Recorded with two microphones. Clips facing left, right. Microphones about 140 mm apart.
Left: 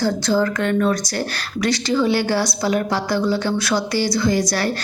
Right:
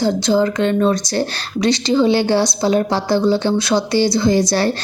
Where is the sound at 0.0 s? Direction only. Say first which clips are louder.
Right 3 dB; 20° right (ahead or behind).